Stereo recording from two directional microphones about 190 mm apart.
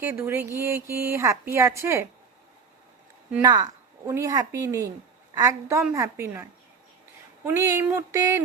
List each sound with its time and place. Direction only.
0.0 s a woman's voice: 10° right (ahead or behind)
3.4 s a woman's voice: 20° right (ahead or behind)